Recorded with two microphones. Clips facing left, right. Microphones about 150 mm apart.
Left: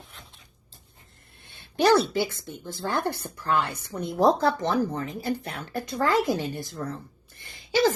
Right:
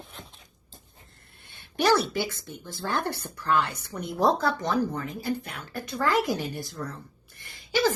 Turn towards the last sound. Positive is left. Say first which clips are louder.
# left 2 dB
turn(degrees=20)  # may be behind; listen again after turning